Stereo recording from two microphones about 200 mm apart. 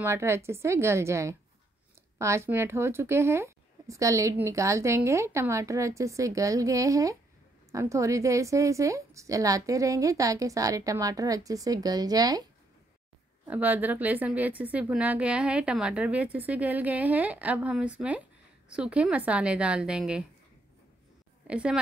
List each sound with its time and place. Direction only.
0.0 s speech: 15° right (ahead or behind)
13.5 s a woman's voice: 10° right (ahead or behind)
21.5 s a woman's voice: 5° right (ahead or behind)